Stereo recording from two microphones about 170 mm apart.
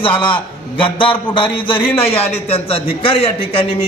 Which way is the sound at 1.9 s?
15° left (ahead or behind).